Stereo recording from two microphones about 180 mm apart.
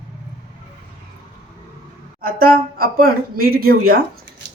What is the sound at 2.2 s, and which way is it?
Speech, 55° right (ahead or behind).